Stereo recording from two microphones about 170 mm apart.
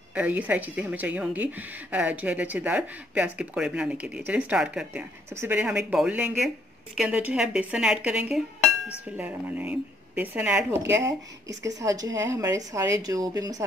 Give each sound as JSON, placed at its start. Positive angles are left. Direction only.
{"t": 0.1, "sound": "a woman's voice", "side_deg": -10}